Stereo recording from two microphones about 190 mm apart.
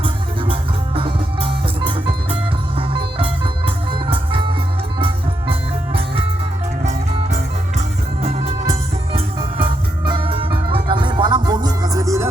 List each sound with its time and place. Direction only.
0.9 s music: 25° right (ahead or behind)
2.7 s music: 25° right (ahead or behind)